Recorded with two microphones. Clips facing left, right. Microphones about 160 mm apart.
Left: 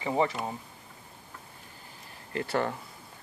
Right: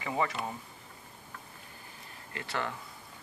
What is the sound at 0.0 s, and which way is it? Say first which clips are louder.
Speech: left 5 dB; 30° left (ahead or behind).